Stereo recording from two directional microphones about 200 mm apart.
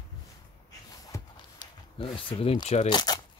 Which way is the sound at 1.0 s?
20° left (ahead or behind).